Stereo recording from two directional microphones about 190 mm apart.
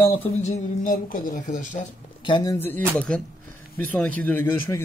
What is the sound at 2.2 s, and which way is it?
Speech, 20° left (ahead or behind).